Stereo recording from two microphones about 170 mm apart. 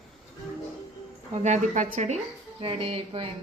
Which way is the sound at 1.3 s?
45° right (ahead or behind).